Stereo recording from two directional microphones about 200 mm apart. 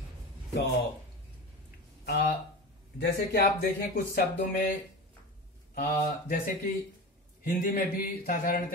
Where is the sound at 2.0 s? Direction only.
55° left (ahead or behind).